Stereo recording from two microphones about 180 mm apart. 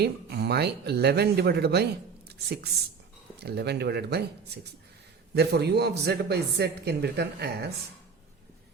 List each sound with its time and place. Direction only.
0.0 s speech: 65° right (ahead or behind)